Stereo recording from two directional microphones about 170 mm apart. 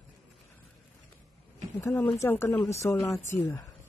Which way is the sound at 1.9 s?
5° left (ahead or behind).